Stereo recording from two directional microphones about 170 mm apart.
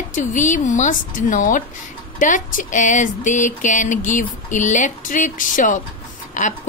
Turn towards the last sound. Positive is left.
turn(degrees=50)  # may be behind; listen again after turning